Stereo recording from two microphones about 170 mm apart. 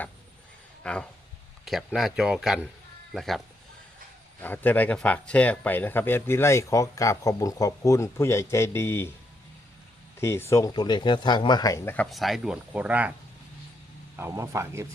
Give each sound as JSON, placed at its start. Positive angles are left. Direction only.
{"t": 0.8, "sound": "speech", "side_deg": 5}
{"t": 10.2, "sound": "speech", "side_deg": 15}
{"t": 11.9, "sound": "speech", "side_deg": 0}
{"t": 14.2, "sound": "speech", "side_deg": -15}